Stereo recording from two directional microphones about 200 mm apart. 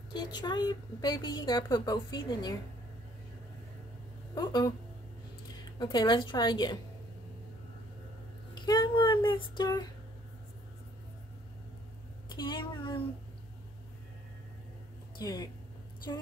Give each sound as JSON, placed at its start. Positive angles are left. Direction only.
{"t": 0.1, "sound": "a woman's voice", "side_deg": 20}
{"t": 4.4, "sound": "a woman's voice", "side_deg": 20}
{"t": 5.8, "sound": "a woman's voice", "side_deg": 20}
{"t": 8.6, "sound": "speech", "side_deg": 20}
{"t": 12.4, "sound": "a woman's voice", "side_deg": 25}
{"t": 15.1, "sound": "a woman's voice", "side_deg": 20}